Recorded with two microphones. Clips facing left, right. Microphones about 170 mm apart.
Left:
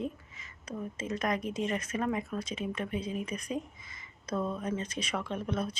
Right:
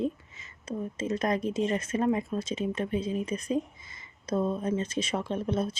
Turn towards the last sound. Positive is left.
turn(degrees=-30)  # may be behind; listen again after turning